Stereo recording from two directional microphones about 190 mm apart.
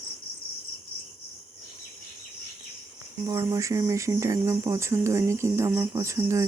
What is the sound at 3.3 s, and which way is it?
Speech, 15° right (ahead or behind).